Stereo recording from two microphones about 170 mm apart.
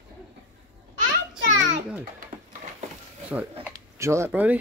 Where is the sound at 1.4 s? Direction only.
90° right.